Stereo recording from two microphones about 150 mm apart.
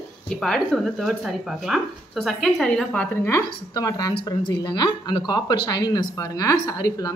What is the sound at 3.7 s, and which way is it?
A woman's voice, 25° left (ahead or behind).